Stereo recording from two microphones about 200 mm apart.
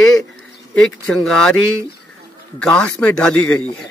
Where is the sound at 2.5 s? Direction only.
5° left (ahead or behind).